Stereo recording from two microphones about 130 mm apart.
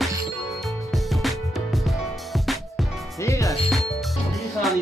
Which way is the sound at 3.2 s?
25° left (ahead or behind).